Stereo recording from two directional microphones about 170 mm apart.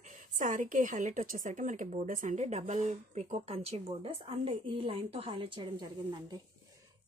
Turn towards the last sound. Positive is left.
turn(degrees=-25)  # may be behind; listen again after turning